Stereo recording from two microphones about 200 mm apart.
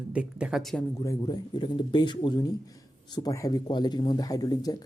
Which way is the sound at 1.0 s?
20° left (ahead or behind).